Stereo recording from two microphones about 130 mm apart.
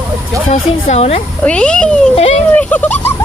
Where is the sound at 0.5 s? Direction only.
55° left (ahead or behind).